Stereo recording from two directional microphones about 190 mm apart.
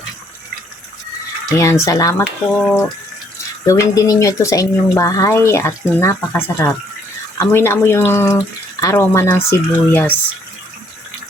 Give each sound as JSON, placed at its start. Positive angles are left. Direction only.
{"t": 1.5, "sound": "speech", "side_deg": 15}
{"t": 2.6, "sound": "speech", "side_deg": 5}